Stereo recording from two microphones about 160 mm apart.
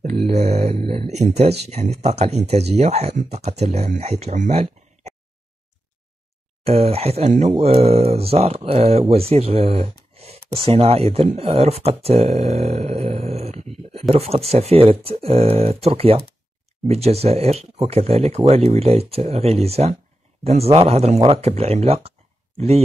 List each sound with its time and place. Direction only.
0.0 s speech: 40° right (ahead or behind)
6.6 s speech: 40° right (ahead or behind)